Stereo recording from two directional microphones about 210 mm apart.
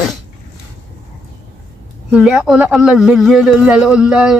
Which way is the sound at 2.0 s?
5° right (ahead or behind).